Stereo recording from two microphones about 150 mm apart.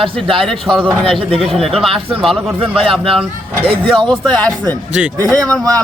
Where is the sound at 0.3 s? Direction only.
Centre (ahead or behind).